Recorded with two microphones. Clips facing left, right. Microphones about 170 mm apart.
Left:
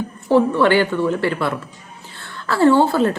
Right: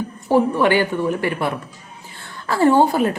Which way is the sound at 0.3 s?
15° right (ahead or behind).